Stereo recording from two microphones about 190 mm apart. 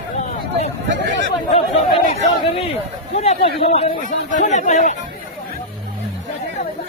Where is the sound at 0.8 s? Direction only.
65° right (ahead or behind).